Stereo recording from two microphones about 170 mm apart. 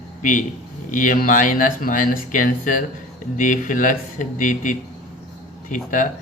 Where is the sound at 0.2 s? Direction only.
50° left (ahead or behind).